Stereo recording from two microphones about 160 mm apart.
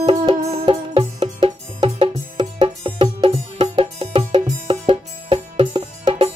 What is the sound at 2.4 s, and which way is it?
Music, 30° right (ahead or behind).